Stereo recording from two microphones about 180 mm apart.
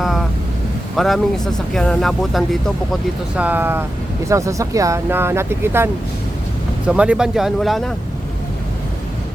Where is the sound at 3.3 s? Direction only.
10° right (ahead or behind).